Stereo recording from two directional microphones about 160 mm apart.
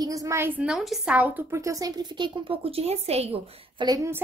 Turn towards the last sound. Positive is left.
turn(degrees=-15)  # may be behind; listen again after turning